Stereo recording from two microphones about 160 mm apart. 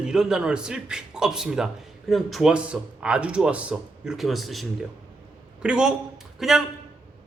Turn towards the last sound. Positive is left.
turn(degrees=0)  # may be behind; listen again after turning